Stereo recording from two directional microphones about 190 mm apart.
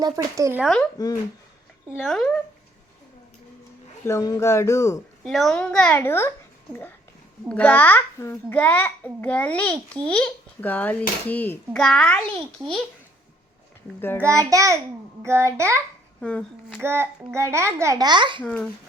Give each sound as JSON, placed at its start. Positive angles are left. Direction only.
{"t": 0.0, "sound": "a child's voice", "side_deg": -15}
{"t": 0.6, "sound": "a child's voice", "side_deg": 5}
{"t": 0.9, "sound": "speech", "side_deg": 20}
{"t": 1.9, "sound": "a child's voice", "side_deg": 0}
{"t": 4.0, "sound": "a child's voice", "side_deg": 20}
{"t": 5.2, "sound": "a child's voice", "side_deg": 0}
{"t": 7.4, "sound": "a child's voice", "side_deg": 5}
{"t": 14.2, "sound": "a child's voice", "side_deg": -15}
{"t": 16.2, "sound": "a woman's voice", "side_deg": 5}
{"t": 16.8, "sound": "a child's voice", "side_deg": -10}
{"t": 18.4, "sound": "a child's voice", "side_deg": 5}